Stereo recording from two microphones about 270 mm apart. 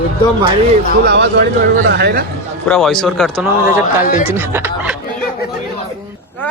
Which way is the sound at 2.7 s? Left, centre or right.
Centre.